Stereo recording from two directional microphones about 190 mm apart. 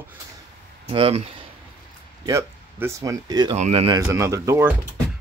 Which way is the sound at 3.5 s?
35° right (ahead or behind).